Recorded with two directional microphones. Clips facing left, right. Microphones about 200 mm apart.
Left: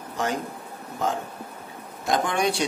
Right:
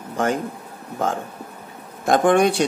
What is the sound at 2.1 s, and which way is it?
Speech, 55° right (ahead or behind).